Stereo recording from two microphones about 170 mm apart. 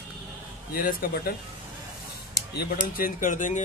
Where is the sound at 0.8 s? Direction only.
60° left (ahead or behind).